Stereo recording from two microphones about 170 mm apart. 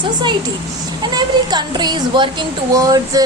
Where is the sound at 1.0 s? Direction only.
25° right (ahead or behind).